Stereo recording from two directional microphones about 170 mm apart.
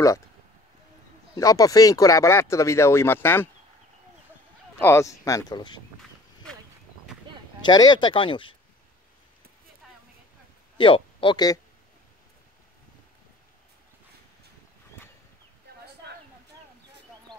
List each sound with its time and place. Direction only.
1.3 s speech: 20° left (ahead or behind)
4.7 s speech: 15° left (ahead or behind)
7.6 s speech: 25° left (ahead or behind)
10.8 s speech: 30° left (ahead or behind)
17.3 s a sound: 25° right (ahead or behind)